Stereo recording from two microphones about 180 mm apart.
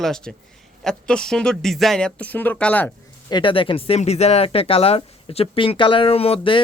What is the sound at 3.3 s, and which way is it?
Speech, 25° left (ahead or behind).